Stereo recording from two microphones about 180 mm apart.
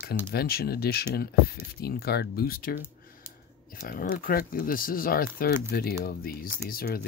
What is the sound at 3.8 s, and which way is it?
Speech, 55° left (ahead or behind).